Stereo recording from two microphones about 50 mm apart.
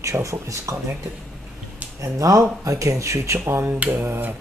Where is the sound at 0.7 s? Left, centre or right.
Right.